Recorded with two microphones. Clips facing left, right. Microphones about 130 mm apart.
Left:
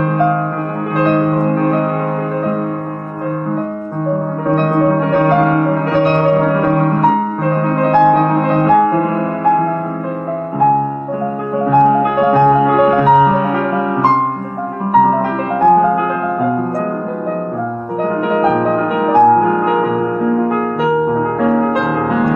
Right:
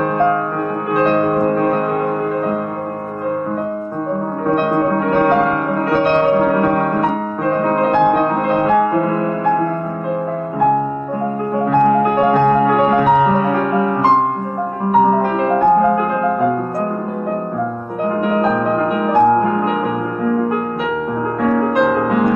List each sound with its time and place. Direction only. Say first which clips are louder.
5.2 s music: left 3 dB; 20° left (ahead or behind)
7.8 s music: left 5 dB; centre (ahead or behind)
11.7 s music: left 2 dB; 10° left (ahead or behind)
18.6 s music: left 2 dB; 25° left (ahead or behind)